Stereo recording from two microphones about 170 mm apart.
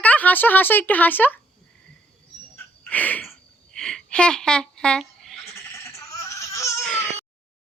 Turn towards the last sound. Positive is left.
turn(degrees=0)  # may be behind; listen again after turning